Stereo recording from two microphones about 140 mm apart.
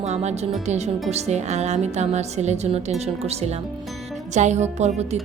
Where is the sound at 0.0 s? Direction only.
50° right (ahead or behind).